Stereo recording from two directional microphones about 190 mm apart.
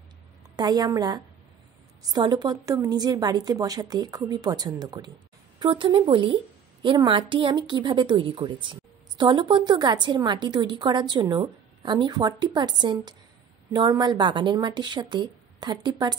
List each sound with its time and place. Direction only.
0.6 s a woman's voice: 20° right (ahead or behind)